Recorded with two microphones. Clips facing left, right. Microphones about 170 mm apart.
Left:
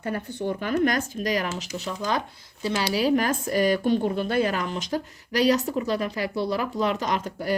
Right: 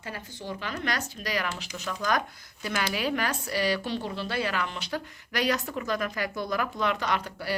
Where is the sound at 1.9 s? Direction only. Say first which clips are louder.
Even; 25° left (ahead or behind).